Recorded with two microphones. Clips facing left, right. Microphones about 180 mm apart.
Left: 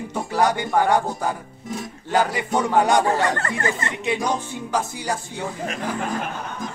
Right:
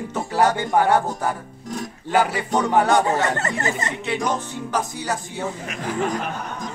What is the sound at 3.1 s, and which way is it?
Speech, 20° right (ahead or behind).